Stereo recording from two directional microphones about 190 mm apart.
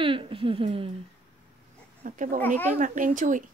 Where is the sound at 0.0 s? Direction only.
30° right (ahead or behind).